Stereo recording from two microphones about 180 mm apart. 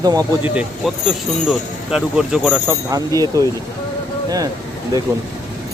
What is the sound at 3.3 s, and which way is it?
Speech, 20° right (ahead or behind).